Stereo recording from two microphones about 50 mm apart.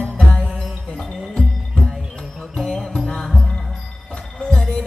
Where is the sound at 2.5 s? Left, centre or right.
Centre.